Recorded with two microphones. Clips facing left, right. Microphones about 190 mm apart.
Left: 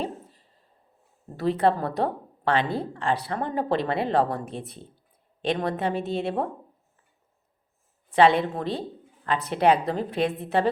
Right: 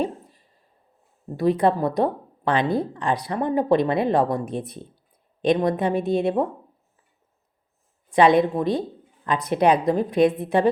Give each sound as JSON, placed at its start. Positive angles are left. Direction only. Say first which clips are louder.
{"t": 0.0, "sound": "a sound", "louder": "right 5 dB", "side_deg": -15}
{"t": 1.4, "sound": "a woman's voice", "louder": "right 3 dB", "side_deg": -15}
{"t": 8.1, "sound": "a woman's voice", "louder": "right 3 dB", "side_deg": -15}